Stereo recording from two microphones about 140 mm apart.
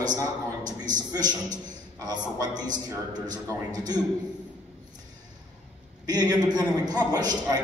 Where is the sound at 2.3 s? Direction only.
30° right (ahead or behind).